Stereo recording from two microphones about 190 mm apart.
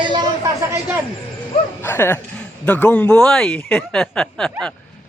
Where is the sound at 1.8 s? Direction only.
10° left (ahead or behind).